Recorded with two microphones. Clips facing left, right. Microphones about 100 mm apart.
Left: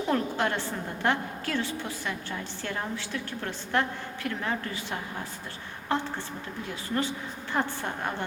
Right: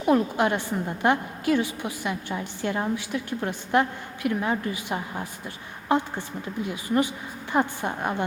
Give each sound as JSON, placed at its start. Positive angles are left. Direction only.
{"t": 0.0, "sound": "a woman's voice", "side_deg": -15}